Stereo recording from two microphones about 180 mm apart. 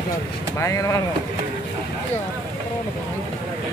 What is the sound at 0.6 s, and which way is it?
Speech, 20° left (ahead or behind).